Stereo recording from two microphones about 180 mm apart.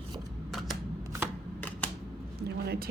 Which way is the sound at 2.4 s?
65° right (ahead or behind).